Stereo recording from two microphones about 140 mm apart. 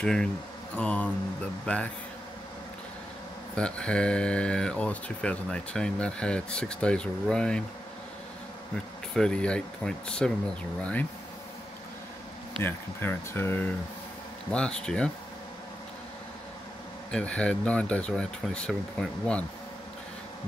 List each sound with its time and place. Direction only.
0.0 s speech: 5° left (ahead or behind)
3.5 s speech: 5° left (ahead or behind)
9.1 s speech: 5° left (ahead or behind)
12.6 s speech: 15° left (ahead or behind)
14.5 s speech: 5° left (ahead or behind)
17.1 s speech: 10° left (ahead or behind)